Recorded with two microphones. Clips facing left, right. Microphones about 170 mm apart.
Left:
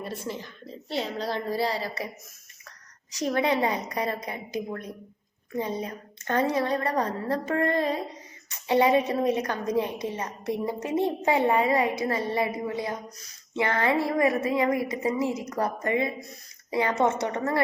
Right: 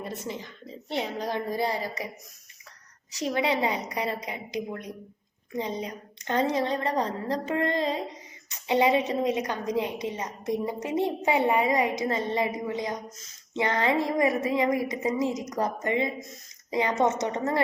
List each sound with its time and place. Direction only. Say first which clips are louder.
0.0 s a woman's voice: left 1 dB; 20° right (ahead or behind)
3.2 s a woman's voice: left 1 dB; 15° right (ahead or behind)